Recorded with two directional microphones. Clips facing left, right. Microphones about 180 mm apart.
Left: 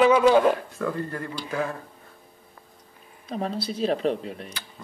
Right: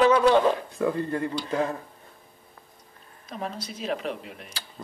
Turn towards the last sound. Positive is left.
turn(degrees=35)  # may be behind; listen again after turning